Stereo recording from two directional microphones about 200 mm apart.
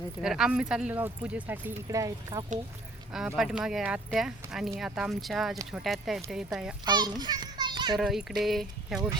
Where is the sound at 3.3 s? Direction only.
Centre (ahead or behind).